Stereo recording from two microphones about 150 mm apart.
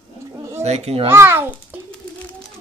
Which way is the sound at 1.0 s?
15° right (ahead or behind).